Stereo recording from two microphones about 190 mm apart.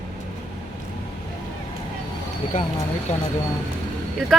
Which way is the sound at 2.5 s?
45° left (ahead or behind).